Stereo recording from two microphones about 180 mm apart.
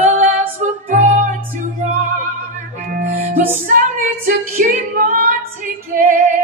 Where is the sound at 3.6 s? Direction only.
45° right (ahead or behind).